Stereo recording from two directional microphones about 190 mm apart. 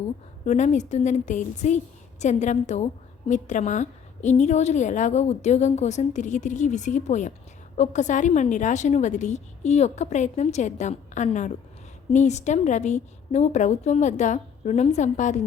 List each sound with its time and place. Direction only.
0.4 s a woman's voice: 40° left (ahead or behind)